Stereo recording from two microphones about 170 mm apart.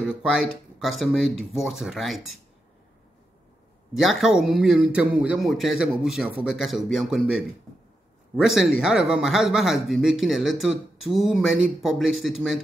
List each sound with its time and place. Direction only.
0.0 s speech: centre (ahead or behind)
3.9 s speech: centre (ahead or behind)